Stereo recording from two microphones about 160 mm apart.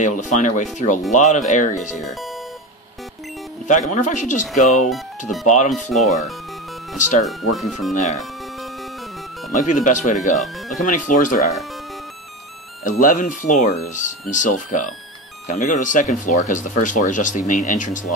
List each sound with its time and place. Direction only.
0.0 s speech: 50° left (ahead or behind)
2.0 s speech: centre (ahead or behind)
3.6 s speech: 50° left (ahead or behind)
4.8 s speech: centre (ahead or behind)
7.9 s speech: 45° left (ahead or behind)
9.5 s speech: 50° left (ahead or behind)
10.3 s speech: centre (ahead or behind)
10.8 s speech: 55° left (ahead or behind)
12.8 s speech: 55° left (ahead or behind)